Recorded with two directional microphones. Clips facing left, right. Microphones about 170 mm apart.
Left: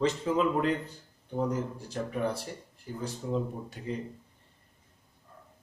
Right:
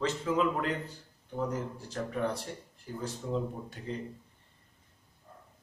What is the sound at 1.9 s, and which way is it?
Speech, 10° left (ahead or behind).